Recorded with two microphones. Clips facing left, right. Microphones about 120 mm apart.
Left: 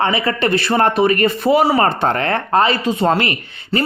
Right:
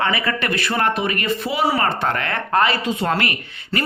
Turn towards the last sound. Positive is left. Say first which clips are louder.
# left 5 dB
turn(degrees=30)  # may be behind; listen again after turning